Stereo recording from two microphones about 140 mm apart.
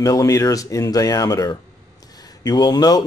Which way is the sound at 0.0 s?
25° left (ahead or behind).